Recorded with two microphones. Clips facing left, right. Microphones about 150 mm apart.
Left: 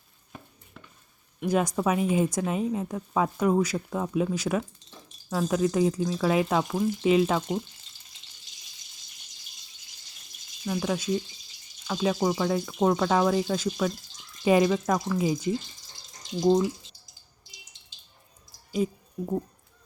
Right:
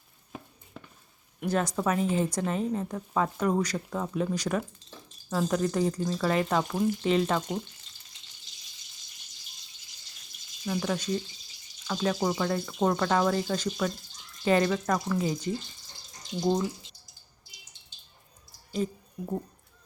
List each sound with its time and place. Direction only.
1.5 s a woman's voice: 10° left (ahead or behind)
10.7 s a woman's voice: 5° left (ahead or behind)
18.7 s speech: 10° left (ahead or behind)